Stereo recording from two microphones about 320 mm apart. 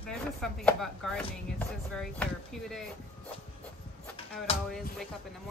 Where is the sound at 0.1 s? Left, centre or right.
Centre.